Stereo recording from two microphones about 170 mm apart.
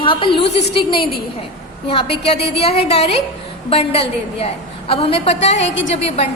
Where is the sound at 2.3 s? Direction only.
75° left (ahead or behind).